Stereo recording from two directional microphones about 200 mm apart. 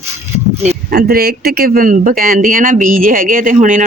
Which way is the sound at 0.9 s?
50° right (ahead or behind).